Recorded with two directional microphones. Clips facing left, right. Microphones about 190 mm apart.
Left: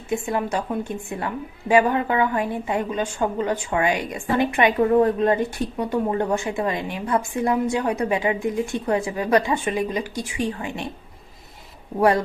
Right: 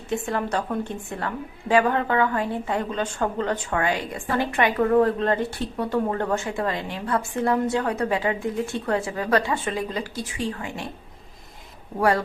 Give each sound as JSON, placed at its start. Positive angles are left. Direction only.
{"t": 0.1, "sound": "a woman's voice", "side_deg": 15}
{"t": 11.9, "sound": "speech", "side_deg": 20}